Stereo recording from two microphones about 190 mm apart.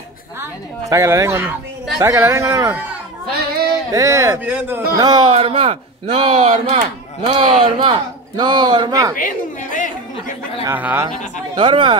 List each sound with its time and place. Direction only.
0.4 s a woman's voice: 15° right (ahead or behind)
3.9 s a woman's voice: 15° right (ahead or behind)
4.9 s speech: 20° right (ahead or behind)
9.1 s a sound: 45° left (ahead or behind)
10.6 s a woman's voice: 10° right (ahead or behind)
11.5 s speech: 25° right (ahead or behind)